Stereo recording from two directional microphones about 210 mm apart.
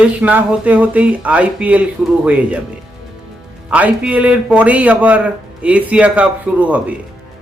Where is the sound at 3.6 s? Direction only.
5° right (ahead or behind).